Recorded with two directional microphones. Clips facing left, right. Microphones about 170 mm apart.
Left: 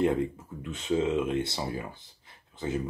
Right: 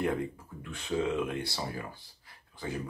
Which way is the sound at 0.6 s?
20° left (ahead or behind).